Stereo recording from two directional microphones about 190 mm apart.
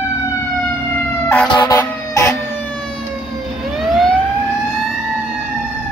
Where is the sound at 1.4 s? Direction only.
20° left (ahead or behind).